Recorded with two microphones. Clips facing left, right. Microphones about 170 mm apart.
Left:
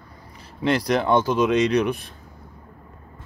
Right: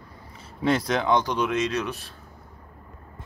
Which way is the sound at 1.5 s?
70° left (ahead or behind).